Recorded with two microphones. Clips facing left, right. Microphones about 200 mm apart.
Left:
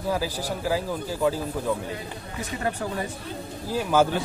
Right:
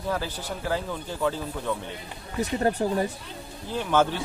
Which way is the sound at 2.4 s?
40° right (ahead or behind).